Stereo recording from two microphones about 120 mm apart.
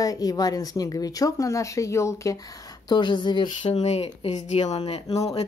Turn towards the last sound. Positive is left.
turn(degrees=60)  # may be behind; listen again after turning